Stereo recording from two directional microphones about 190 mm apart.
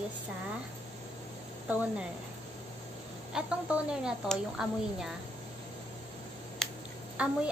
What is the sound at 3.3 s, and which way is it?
A woman's voice, 5° right (ahead or behind).